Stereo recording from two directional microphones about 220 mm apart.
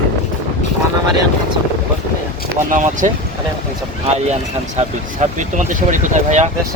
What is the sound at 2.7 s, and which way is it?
Speech, 35° right (ahead or behind).